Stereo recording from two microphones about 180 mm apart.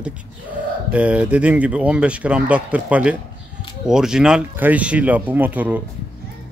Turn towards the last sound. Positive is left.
turn(degrees=-10)  # may be behind; listen again after turning